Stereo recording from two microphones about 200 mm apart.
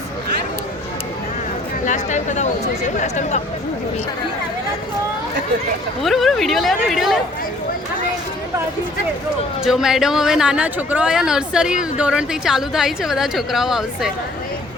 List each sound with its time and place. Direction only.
1.8 s speech: 35° left (ahead or behind)
6.0 s a woman's voice: centre (ahead or behind)
9.6 s a woman's voice: centre (ahead or behind)